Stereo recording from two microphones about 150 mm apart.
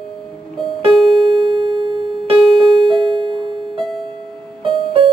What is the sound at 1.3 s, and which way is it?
Music, 35° right (ahead or behind).